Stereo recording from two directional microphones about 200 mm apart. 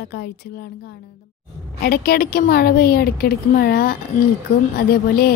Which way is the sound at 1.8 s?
50° left (ahead or behind).